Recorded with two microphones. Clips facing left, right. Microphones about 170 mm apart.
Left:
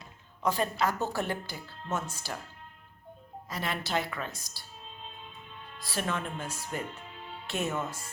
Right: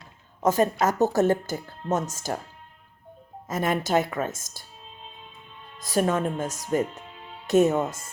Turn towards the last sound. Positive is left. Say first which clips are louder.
# right 12 dB
turn(degrees=-40)  # may be behind; listen again after turning